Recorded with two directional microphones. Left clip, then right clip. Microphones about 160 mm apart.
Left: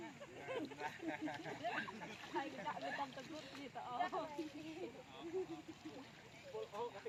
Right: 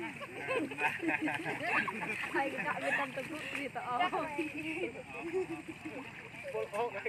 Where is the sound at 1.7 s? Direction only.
40° left (ahead or behind).